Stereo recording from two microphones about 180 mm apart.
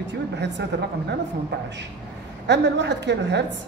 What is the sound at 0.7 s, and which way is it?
Speech, 70° right (ahead or behind).